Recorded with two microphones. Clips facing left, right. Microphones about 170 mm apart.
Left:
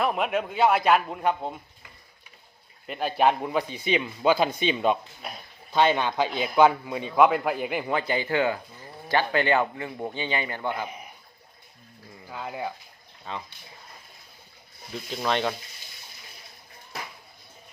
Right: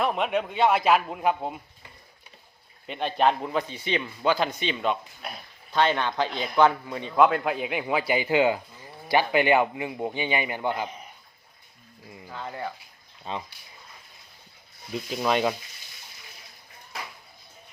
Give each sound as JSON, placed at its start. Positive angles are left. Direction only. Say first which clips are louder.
{"t": 0.0, "sound": "a man's voice", "louder": "even", "side_deg": 0}
{"t": 2.8, "sound": "a man's voice", "louder": "left 1 dB", "side_deg": 5}
{"t": 10.8, "sound": "a man's voice", "louder": "even", "side_deg": 10}
{"t": 12.3, "sound": "a man's voice", "louder": "left 1 dB", "side_deg": 10}
{"t": 13.3, "sound": "speech", "louder": "right 2 dB", "side_deg": -20}
{"t": 15.1, "sound": "a man's voice", "louder": "right 2 dB", "side_deg": -10}